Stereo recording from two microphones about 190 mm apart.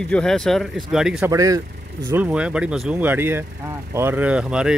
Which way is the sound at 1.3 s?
15° right (ahead or behind).